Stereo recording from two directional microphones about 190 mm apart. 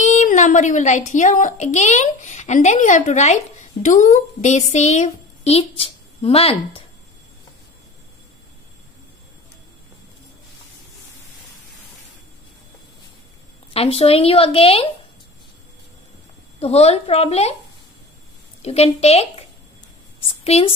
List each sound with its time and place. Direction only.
0.0 s a woman's voice: 40° left (ahead or behind)
13.7 s a woman's voice: 30° left (ahead or behind)
16.5 s a woman's voice: 35° left (ahead or behind)
18.6 s a woman's voice: 35° left (ahead or behind)